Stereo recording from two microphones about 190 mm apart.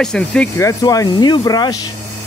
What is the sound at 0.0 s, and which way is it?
Speech, 5° left (ahead or behind).